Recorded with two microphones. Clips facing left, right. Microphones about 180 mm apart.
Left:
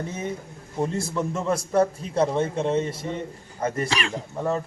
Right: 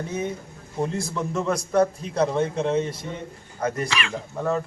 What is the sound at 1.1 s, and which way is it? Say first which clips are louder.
Speech: even; 5° left (ahead or behind).